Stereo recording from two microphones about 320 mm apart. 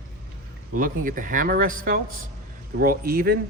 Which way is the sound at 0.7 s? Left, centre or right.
Right.